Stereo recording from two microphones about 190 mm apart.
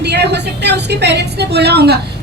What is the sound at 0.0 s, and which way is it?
A woman's voice, 60° right (ahead or behind).